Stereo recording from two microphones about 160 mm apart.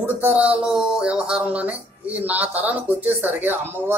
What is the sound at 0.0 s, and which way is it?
Speech, 10° right (ahead or behind).